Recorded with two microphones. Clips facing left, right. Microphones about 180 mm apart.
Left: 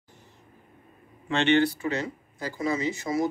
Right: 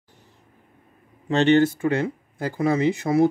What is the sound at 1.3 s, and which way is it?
Speech, 40° right (ahead or behind).